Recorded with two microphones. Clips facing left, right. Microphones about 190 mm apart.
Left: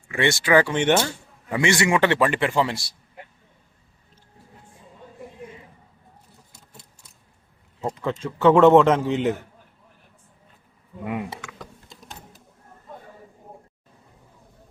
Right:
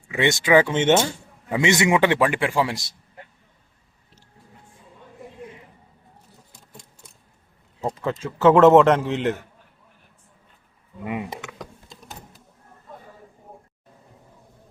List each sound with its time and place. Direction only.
0.1 s a man's voice: 20° right (ahead or behind)
8.0 s a man's voice: centre (ahead or behind)
11.0 s a man's voice: centre (ahead or behind)
11.3 s a sound: 15° right (ahead or behind)